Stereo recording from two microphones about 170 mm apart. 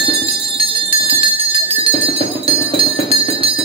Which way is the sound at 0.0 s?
30° right (ahead or behind).